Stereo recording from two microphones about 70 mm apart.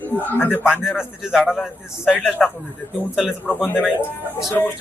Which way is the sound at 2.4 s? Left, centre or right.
Centre.